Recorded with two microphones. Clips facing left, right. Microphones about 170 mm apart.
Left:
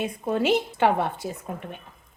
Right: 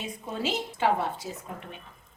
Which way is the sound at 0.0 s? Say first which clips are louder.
Left 8 dB; 60° left (ahead or behind).